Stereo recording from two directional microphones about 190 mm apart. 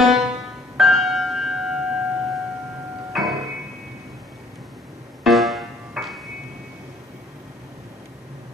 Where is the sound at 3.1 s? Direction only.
Centre (ahead or behind).